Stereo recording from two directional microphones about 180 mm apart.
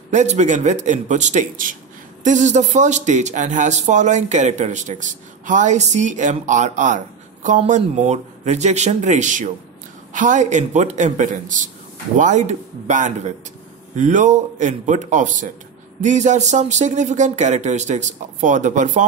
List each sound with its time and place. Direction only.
0.1 s speech: 40° right (ahead or behind)